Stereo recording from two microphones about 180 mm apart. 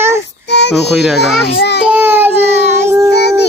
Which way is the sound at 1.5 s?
65° left (ahead or behind).